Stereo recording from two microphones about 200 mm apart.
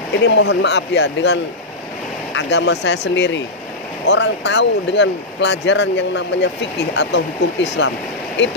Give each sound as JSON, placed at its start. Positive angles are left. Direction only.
{"t": 0.2, "sound": "speech", "side_deg": 60}